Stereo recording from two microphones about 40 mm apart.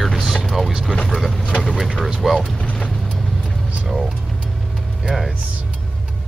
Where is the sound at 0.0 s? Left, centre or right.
Centre.